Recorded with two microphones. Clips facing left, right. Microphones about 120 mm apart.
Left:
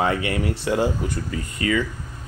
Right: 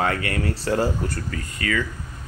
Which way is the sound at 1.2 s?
20° left (ahead or behind).